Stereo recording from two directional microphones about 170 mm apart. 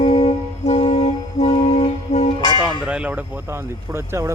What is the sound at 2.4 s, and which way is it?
Music, 25° left (ahead or behind).